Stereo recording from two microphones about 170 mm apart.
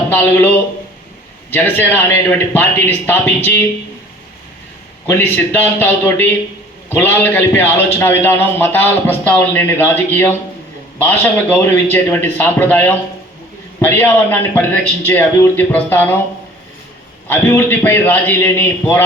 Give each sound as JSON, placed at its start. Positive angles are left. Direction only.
{"t": 0.1, "sound": "a man's voice", "side_deg": 10}
{"t": 5.0, "sound": "a man's voice", "side_deg": 10}
{"t": 17.2, "sound": "a man's voice", "side_deg": 15}